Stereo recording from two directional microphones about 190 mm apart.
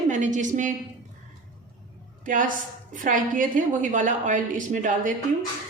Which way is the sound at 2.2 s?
45° right (ahead or behind).